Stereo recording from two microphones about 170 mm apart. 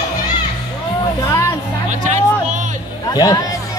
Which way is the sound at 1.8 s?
45° right (ahead or behind).